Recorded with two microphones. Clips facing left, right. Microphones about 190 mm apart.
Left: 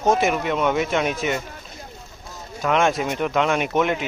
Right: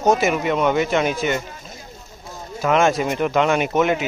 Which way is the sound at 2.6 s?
Centre (ahead or behind).